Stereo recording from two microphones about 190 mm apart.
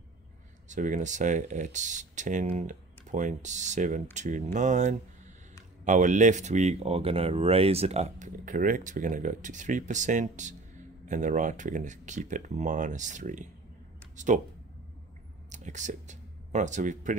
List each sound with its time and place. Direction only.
0.7 s speech: 40° right (ahead or behind)
15.5 s speech: 40° right (ahead or behind)